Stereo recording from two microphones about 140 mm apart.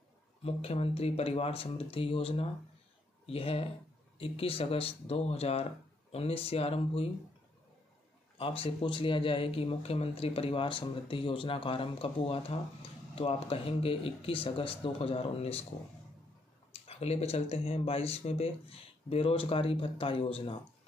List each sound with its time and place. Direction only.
0.4 s speech: 45° left (ahead or behind)
8.4 s speech: 40° left (ahead or behind)
16.8 s speech: 45° left (ahead or behind)